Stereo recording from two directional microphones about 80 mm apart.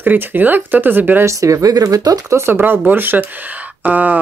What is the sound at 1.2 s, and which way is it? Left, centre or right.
Speech, right.